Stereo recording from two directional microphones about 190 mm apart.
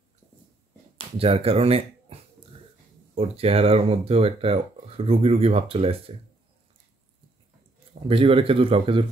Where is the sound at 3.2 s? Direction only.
30° right (ahead or behind).